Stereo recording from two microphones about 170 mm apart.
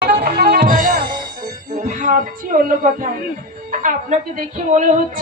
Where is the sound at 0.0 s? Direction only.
60° right (ahead or behind).